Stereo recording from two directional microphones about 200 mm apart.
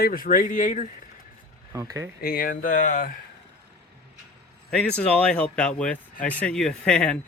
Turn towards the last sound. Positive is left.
turn(degrees=5)  # may be behind; listen again after turning